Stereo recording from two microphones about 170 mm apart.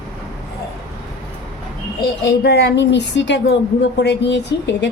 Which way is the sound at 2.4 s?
75° left (ahead or behind).